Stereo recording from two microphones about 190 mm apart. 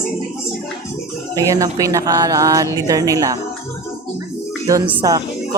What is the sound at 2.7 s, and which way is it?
Speech, 20° right (ahead or behind).